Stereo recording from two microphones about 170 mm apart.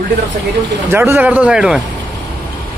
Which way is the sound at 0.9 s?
15° right (ahead or behind).